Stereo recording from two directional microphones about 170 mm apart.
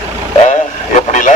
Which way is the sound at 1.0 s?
50° left (ahead or behind).